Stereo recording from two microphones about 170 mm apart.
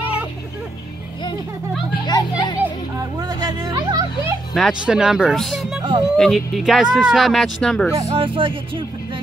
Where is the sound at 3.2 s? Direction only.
20° right (ahead or behind).